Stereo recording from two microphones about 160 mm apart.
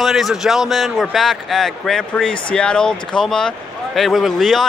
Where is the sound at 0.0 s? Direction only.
Centre (ahead or behind).